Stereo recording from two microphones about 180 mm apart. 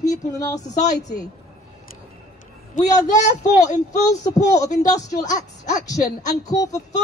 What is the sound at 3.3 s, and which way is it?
Speech, 40° left (ahead or behind).